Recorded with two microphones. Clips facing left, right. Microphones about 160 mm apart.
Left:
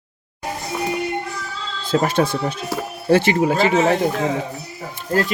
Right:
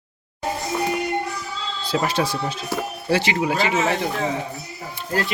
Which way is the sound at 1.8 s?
50° left (ahead or behind).